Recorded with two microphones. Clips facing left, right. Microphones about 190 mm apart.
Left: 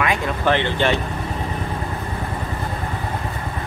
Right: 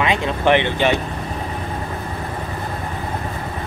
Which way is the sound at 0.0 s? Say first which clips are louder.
Right 2 dB; 20° right (ahead or behind).